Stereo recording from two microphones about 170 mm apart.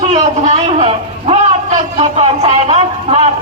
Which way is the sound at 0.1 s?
40° right (ahead or behind).